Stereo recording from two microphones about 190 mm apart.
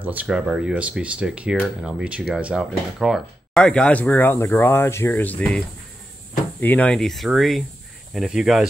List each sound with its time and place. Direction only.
0.0 s speech: 10° right (ahead or behind)
6.6 s speech: 10° left (ahead or behind)